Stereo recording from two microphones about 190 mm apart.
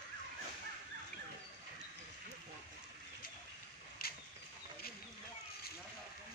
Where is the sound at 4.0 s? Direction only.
55° left (ahead or behind).